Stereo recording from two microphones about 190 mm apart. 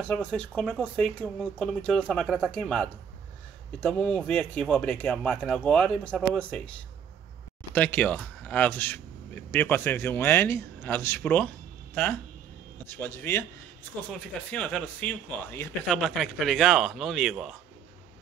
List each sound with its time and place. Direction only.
0.0 s speech: 5° left (ahead or behind)
14.5 s speech: 5° left (ahead or behind)